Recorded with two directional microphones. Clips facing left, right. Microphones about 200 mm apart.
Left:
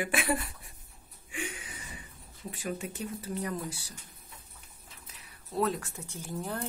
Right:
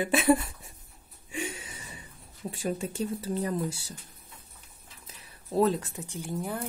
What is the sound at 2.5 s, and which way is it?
Speech, 25° right (ahead or behind).